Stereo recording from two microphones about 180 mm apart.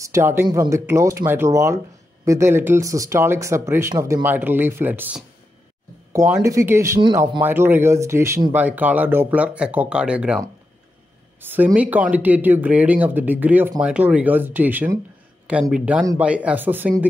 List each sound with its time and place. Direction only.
0.0 s speech: 15° right (ahead or behind)
7.4 s speech: 10° right (ahead or behind)
11.4 s speech: 10° right (ahead or behind)